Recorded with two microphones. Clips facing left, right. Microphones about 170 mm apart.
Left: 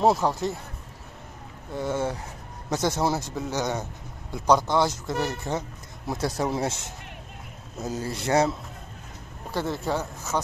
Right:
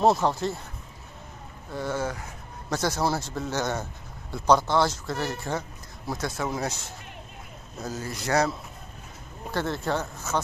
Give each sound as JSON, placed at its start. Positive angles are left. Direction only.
{"t": 0.0, "sound": "speech", "side_deg": 10}
{"t": 1.7, "sound": "speech", "side_deg": 20}
{"t": 6.0, "sound": "speech", "side_deg": 30}
{"t": 9.5, "sound": "speech", "side_deg": 10}